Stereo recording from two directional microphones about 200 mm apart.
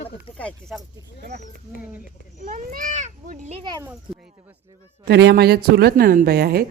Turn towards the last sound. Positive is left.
turn(degrees=-50)  # may be behind; listen again after turning